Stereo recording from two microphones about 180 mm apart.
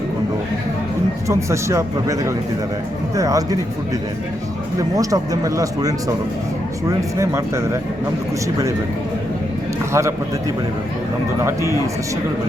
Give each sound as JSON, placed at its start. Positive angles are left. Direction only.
{"t": 1.3, "sound": "a man's voice", "side_deg": -15}
{"t": 4.8, "sound": "a man's voice", "side_deg": -20}
{"t": 9.9, "sound": "a man's voice", "side_deg": -15}